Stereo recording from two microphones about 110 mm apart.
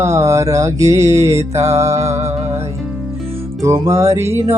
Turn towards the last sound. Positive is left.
turn(degrees=-25)  # may be behind; listen again after turning